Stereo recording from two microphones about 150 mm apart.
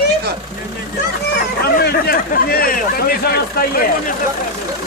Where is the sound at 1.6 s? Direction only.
90° left.